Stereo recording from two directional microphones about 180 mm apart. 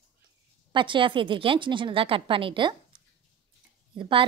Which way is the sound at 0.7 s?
25° right (ahead or behind).